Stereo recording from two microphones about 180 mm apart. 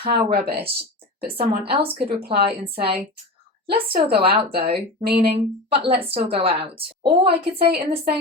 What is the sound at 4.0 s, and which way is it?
Speech, 60° right (ahead or behind).